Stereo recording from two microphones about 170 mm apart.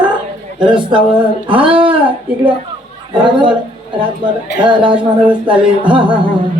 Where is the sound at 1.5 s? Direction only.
30° right (ahead or behind).